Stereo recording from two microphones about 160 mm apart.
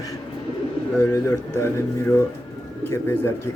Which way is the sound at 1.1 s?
20° left (ahead or behind).